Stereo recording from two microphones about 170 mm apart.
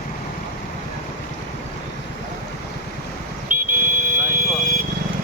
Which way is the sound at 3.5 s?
50° right (ahead or behind).